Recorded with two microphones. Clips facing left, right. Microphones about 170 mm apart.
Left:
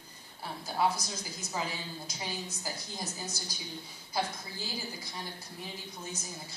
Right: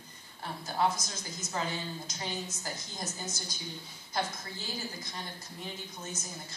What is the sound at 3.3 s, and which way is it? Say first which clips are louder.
Speech: right 1 dB; 35° left (ahead or behind).